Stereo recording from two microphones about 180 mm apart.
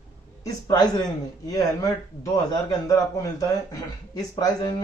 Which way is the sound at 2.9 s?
20° left (ahead or behind).